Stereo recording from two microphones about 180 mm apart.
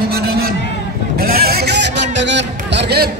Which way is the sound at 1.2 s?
55° right (ahead or behind).